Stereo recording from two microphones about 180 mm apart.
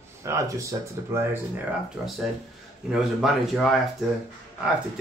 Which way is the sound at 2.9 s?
5° right (ahead or behind).